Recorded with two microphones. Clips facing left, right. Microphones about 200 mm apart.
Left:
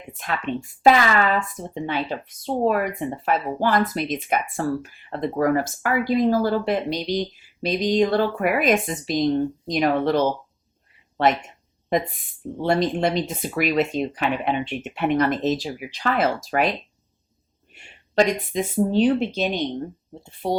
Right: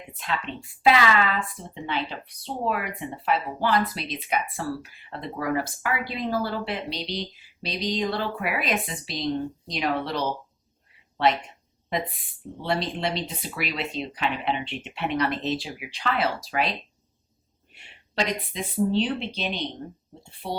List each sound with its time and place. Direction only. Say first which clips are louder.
0.1 s speech: left 5 dB; 50° left (ahead or behind)
12.6 s speech: left 7 dB; 45° left (ahead or behind)